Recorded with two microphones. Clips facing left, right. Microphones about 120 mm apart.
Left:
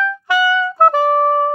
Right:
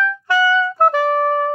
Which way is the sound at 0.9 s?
45° left (ahead or behind).